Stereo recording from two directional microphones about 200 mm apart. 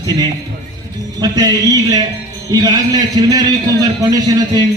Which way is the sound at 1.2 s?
20° right (ahead or behind).